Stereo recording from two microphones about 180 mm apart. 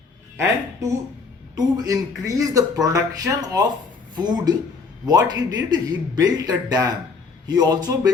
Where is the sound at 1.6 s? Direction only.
20° right (ahead or behind).